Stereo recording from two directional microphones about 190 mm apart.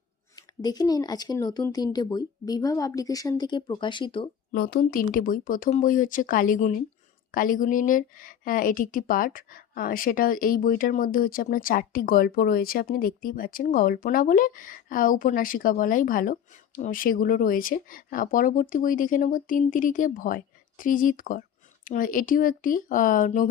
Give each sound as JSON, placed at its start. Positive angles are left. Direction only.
{"t": 0.3, "sound": "speech", "side_deg": 20}
{"t": 4.5, "sound": "a woman's voice", "side_deg": 50}